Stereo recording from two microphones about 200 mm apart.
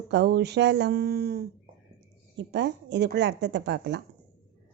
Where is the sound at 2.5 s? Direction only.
60° right (ahead or behind).